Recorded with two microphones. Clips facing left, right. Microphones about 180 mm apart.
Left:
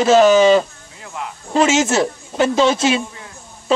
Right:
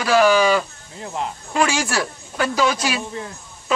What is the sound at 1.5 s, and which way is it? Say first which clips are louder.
Speech: left 6 dB; 20° left (ahead or behind).